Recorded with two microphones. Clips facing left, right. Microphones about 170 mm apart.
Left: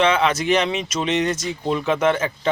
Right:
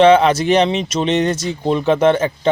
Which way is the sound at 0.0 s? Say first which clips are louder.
Right 8 dB; 35° right (ahead or behind).